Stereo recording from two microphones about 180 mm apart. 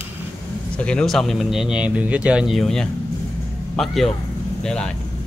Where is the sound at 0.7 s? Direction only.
5° left (ahead or behind).